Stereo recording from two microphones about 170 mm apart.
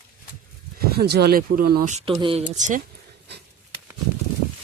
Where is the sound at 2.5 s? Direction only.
45° right (ahead or behind).